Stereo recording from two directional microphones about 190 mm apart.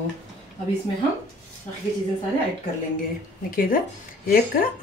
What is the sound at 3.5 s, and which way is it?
Speech, 50° left (ahead or behind).